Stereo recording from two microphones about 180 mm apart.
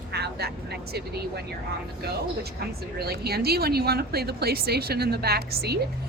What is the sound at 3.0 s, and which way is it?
Speech, 60° right (ahead or behind).